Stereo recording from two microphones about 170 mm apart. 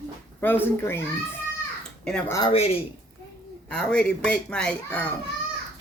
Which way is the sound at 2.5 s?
35° left (ahead or behind).